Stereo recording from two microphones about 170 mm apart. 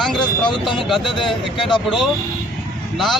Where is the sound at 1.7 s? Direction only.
Centre (ahead or behind).